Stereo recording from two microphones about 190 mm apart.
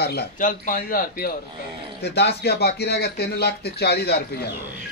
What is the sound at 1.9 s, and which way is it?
A man's voice, 60° left (ahead or behind).